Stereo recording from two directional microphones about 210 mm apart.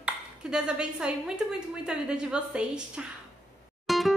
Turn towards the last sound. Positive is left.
turn(degrees=0)  # may be behind; listen again after turning